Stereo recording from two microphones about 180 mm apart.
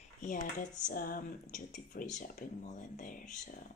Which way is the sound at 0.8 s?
50° left (ahead or behind).